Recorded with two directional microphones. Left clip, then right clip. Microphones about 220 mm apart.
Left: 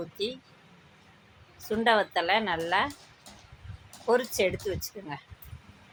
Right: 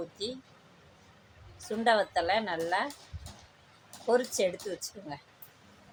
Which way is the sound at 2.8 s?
Centre (ahead or behind).